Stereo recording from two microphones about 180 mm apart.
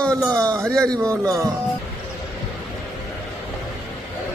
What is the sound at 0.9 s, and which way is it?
Speech, 20° right (ahead or behind).